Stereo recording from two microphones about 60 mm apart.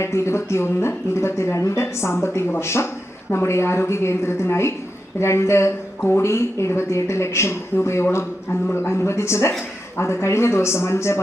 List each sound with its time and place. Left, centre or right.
0.0 s speech: left